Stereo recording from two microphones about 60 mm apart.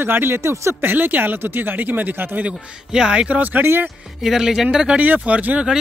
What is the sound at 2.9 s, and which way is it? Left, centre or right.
Speech, centre.